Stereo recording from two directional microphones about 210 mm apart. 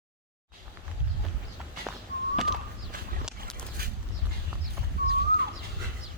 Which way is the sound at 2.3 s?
Centre (ahead or behind).